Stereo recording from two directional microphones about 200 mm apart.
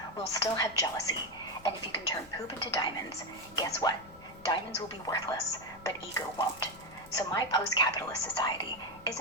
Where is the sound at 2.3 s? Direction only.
20° left (ahead or behind).